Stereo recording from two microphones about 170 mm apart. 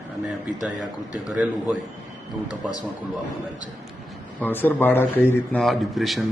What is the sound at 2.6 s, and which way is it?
Speech, 10° right (ahead or behind).